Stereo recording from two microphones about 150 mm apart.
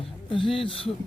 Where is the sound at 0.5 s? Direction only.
35° left (ahead or behind).